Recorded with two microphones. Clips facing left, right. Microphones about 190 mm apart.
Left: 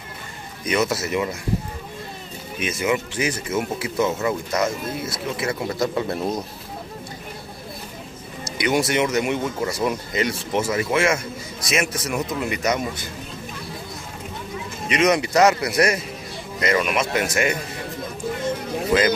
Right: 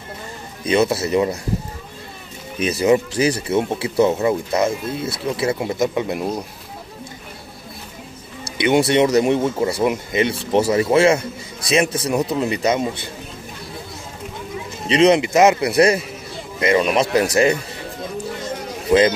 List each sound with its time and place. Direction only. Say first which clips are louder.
0.7 s speech: right 5 dB; 30° right (ahead or behind)
2.6 s speech: right 7 dB; 35° right (ahead or behind); by 6.4 s 10° right (ahead or behind)
8.5 s speech: right 5 dB; 25° right (ahead or behind)
14.9 s speech: right 5 dB; 30° right (ahead or behind)